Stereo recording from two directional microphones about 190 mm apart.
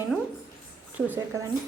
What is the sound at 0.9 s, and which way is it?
Speech, 10° right (ahead or behind).